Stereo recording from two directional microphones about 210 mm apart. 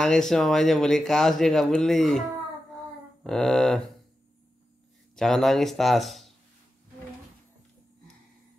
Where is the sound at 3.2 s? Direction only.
Centre (ahead or behind).